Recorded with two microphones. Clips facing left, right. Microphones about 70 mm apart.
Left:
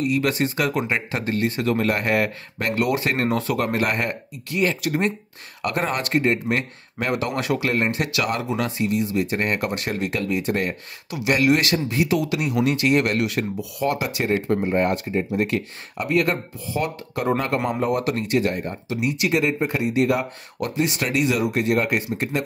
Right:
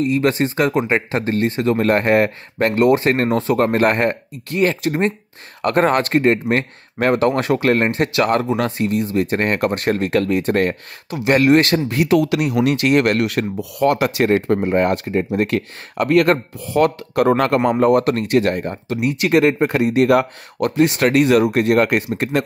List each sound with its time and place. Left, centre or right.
0.0 s speech: right